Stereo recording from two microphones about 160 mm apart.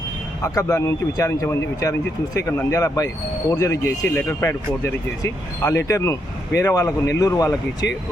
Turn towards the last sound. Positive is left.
turn(degrees=20)  # may be behind; listen again after turning